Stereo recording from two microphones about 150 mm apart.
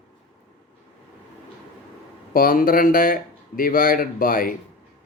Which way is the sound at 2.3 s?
70° left (ahead or behind).